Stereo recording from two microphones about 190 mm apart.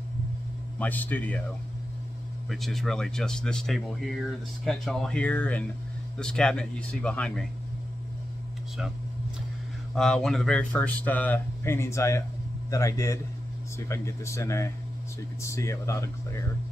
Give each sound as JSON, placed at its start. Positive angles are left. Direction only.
{"t": 0.7, "sound": "speech", "side_deg": 10}
{"t": 2.5, "sound": "speech", "side_deg": 0}
{"t": 9.9, "sound": "speech", "side_deg": 5}